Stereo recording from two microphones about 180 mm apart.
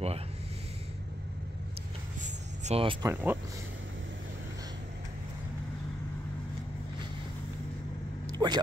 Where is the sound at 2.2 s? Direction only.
35° right (ahead or behind).